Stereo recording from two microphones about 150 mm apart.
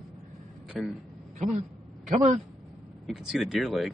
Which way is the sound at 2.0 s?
50° right (ahead or behind).